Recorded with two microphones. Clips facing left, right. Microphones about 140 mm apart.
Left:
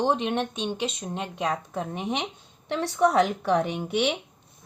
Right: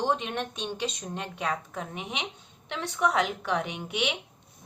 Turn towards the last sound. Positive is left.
turn(degrees=40)  # may be behind; listen again after turning